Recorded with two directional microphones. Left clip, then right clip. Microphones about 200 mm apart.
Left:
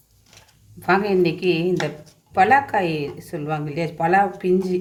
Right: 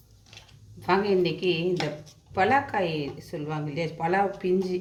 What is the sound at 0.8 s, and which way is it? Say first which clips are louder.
A woman's voice: left 5 dB; 25° left (ahead or behind).